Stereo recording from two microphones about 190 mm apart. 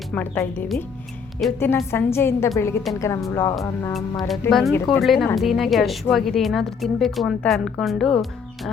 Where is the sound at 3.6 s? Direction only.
15° left (ahead or behind).